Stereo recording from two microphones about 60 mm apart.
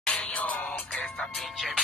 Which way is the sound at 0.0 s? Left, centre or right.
Centre.